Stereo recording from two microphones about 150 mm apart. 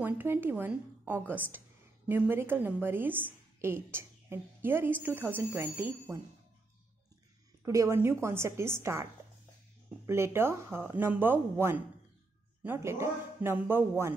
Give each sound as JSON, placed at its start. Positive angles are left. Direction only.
{"t": 0.0, "sound": "a woman's voice", "side_deg": -15}
{"t": 7.6, "sound": "a woman's voice", "side_deg": -20}